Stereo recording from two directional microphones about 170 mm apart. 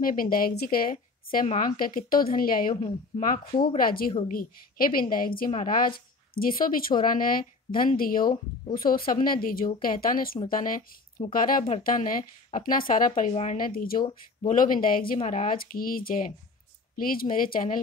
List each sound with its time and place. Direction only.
0.0 s a woman's voice: 55° left (ahead or behind)